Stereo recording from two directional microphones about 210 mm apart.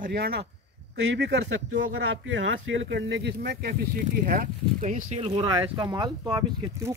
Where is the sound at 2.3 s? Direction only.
65° right (ahead or behind).